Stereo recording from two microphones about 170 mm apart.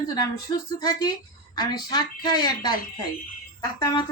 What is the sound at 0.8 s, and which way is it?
A woman's voice, 25° left (ahead or behind).